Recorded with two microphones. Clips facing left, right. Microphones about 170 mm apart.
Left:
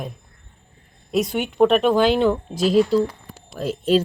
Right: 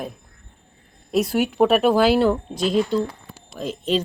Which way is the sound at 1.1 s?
Centre (ahead or behind).